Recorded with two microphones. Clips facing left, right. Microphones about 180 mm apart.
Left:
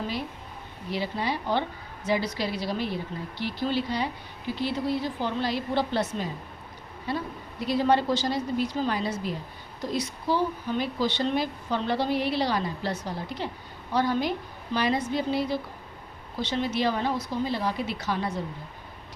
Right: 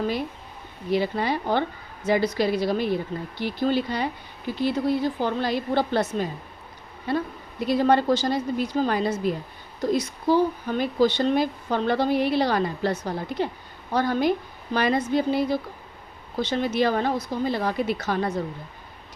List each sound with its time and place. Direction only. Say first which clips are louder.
0.9 s speech: right 6 dB; 50° right (ahead or behind)